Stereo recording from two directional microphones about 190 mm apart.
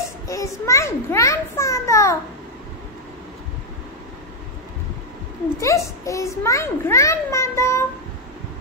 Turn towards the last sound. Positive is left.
turn(degrees=15)  # may be behind; listen again after turning